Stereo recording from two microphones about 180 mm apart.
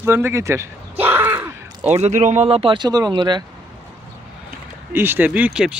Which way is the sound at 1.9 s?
35° right (ahead or behind).